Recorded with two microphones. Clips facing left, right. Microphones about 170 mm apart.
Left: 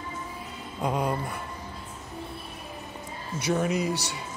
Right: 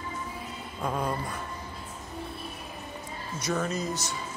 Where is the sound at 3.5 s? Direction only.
15° left (ahead or behind).